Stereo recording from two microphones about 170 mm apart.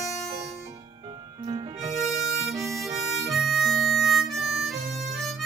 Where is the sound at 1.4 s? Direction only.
30° right (ahead or behind).